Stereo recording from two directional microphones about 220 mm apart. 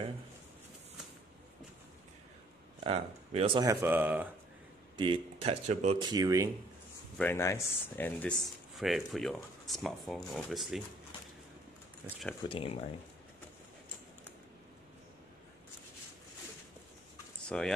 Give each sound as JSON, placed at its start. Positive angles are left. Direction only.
{"t": 2.8, "sound": "speech", "side_deg": -25}
{"t": 3.8, "sound": "speech", "side_deg": -10}
{"t": 4.9, "sound": "speech", "side_deg": -20}
{"t": 7.2, "sound": "speech", "side_deg": 10}
{"t": 12.4, "sound": "speech", "side_deg": 25}
{"t": 17.5, "sound": "speech", "side_deg": 5}